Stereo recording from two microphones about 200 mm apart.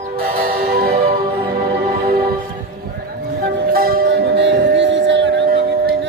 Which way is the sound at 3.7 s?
50° right (ahead or behind).